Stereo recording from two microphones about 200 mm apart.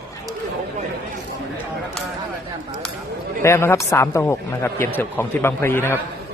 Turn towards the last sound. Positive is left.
turn(degrees=10)  # may be behind; listen again after turning